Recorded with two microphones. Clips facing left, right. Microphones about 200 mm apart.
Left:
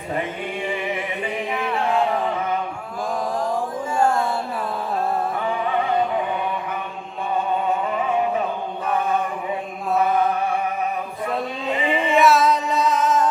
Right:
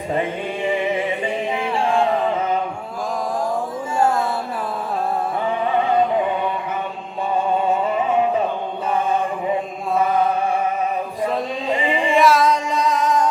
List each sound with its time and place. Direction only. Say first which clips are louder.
0.9 s music: right 4 dB; 25° right (ahead or behind)
12.0 s music: right 1 dB; 5° left (ahead or behind)